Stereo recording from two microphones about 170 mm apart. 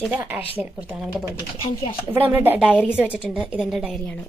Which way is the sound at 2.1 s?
10° right (ahead or behind).